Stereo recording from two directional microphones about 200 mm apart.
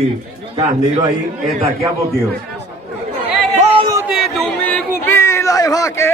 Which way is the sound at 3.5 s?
30° right (ahead or behind).